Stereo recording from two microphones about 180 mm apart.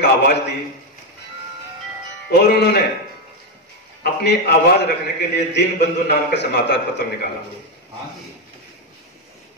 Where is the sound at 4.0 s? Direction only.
65° left (ahead or behind).